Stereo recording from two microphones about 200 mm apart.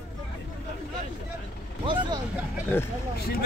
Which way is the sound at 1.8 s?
25° right (ahead or behind).